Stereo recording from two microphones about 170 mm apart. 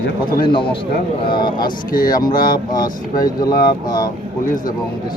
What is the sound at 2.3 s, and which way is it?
Speech, 55° left (ahead or behind).